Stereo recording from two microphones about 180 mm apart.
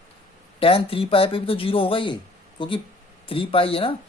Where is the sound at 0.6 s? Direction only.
30° left (ahead or behind).